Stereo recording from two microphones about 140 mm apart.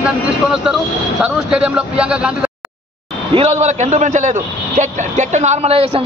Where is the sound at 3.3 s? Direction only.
50° right (ahead or behind).